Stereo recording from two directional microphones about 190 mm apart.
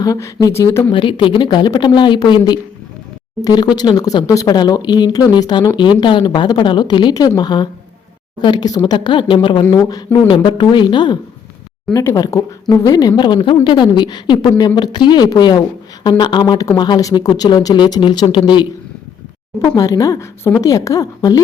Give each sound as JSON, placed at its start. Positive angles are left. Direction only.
{"t": 0.0, "sound": "speech", "side_deg": 15}
{"t": 0.9, "sound": "speech", "side_deg": 25}